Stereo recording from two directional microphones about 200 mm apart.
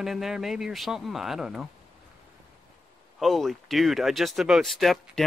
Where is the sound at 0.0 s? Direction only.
Centre (ahead or behind).